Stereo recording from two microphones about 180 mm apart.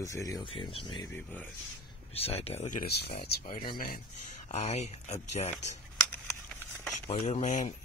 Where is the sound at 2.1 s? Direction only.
35° left (ahead or behind).